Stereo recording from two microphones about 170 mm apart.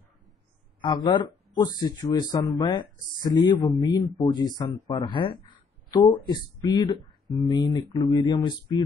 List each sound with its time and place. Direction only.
0.7 s speech: 25° left (ahead or behind)